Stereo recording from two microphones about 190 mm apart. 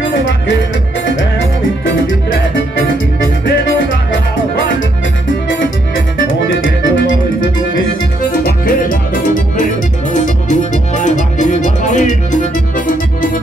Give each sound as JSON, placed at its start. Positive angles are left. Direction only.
{"t": 6.6, "sound": "music", "side_deg": 75}
{"t": 8.3, "sound": "music", "side_deg": 50}